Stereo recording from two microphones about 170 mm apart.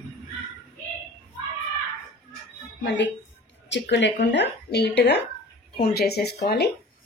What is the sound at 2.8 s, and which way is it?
A woman's voice, 90° left.